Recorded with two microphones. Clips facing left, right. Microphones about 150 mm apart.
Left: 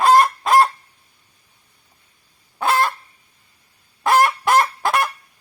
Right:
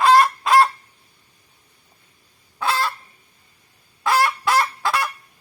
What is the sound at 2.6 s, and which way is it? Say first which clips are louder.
Fowl: left 4 dB; 50° left (ahead or behind).